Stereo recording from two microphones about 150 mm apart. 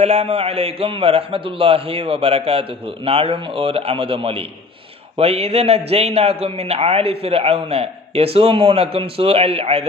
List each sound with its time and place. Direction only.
0.0 s a man's voice: 45° right (ahead or behind)